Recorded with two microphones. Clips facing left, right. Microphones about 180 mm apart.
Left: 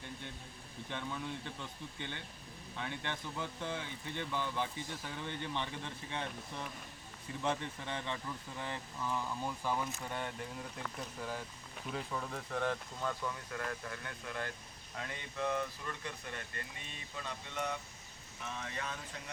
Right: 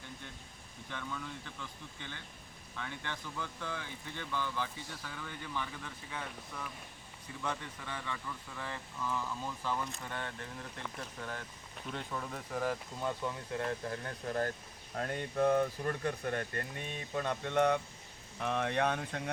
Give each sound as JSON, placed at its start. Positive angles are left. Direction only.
{"t": 0.9, "sound": "speech", "side_deg": 20}
{"t": 13.0, "sound": "speech", "side_deg": -20}